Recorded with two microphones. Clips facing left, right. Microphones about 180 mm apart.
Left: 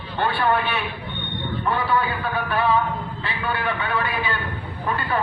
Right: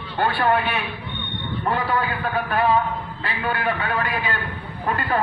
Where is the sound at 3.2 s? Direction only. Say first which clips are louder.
Right 2 dB; 40° right (ahead or behind).